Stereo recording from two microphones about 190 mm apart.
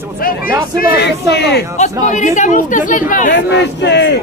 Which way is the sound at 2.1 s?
40° left (ahead or behind).